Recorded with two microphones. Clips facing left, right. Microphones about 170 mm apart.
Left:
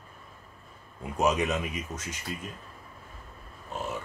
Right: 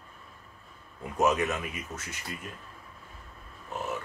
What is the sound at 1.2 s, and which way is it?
Speech, 15° left (ahead or behind).